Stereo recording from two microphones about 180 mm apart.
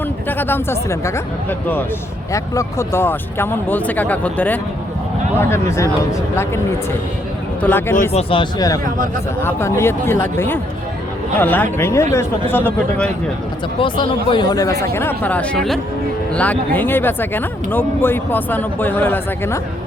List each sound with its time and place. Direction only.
0.3 s speech: 10° left (ahead or behind)
7.6 s speech: 10° left (ahead or behind)
8.1 s speech: 30° left (ahead or behind); by 13.1 s 10° left (ahead or behind)
13.7 s speech: 25° left (ahead or behind); by 19.5 s 10° left (ahead or behind)